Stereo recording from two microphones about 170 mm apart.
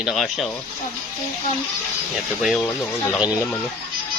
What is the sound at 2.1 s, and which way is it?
Speech, centre (ahead or behind).